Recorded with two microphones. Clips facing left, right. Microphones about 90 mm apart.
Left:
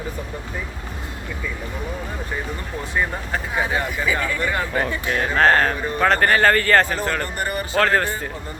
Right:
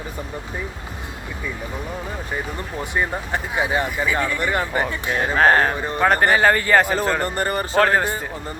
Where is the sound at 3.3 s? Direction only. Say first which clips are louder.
Right 1 dB; 10° right (ahead or behind).